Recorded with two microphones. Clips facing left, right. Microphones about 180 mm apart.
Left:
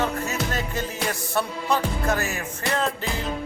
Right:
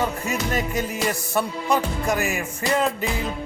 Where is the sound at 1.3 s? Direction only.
15° right (ahead or behind).